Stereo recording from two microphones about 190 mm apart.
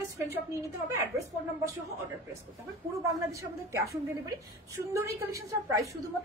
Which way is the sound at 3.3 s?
15° right (ahead or behind).